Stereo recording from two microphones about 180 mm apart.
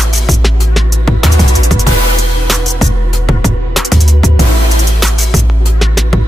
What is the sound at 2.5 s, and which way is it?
Music, centre (ahead or behind).